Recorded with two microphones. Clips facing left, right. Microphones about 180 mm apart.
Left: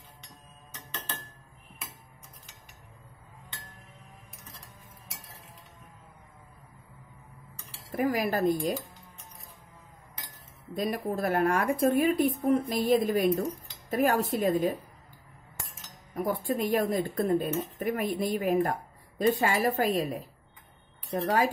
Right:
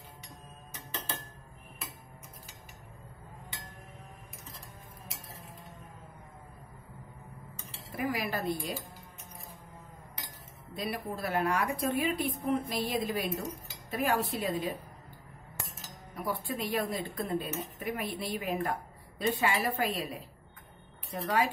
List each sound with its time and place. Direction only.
0.7 s dishes: 10° right (ahead or behind)
7.9 s a woman's voice: 45° left (ahead or behind)
10.8 s a woman's voice: 45° left (ahead or behind)
16.2 s a woman's voice: 45° left (ahead or behind)
21.2 s a woman's voice: 45° left (ahead or behind)